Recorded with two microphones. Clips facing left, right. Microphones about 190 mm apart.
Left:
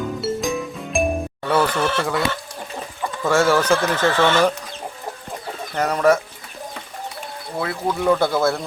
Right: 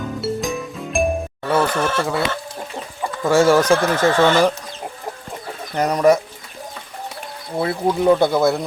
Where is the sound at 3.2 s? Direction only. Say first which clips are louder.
Right 3 dB; 15° right (ahead or behind).